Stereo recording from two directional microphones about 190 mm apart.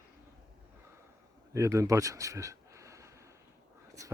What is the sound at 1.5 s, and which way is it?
Speech, 15° right (ahead or behind).